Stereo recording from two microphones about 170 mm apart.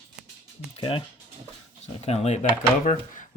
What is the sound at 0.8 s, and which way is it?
Speech, 30° left (ahead or behind).